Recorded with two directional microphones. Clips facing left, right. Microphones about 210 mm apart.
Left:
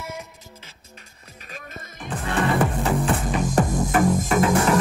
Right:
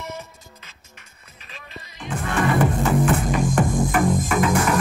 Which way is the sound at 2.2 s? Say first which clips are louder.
Right 1 dB; 35° left (ahead or behind).